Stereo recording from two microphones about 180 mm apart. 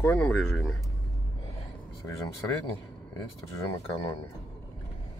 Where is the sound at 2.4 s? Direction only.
15° left (ahead or behind).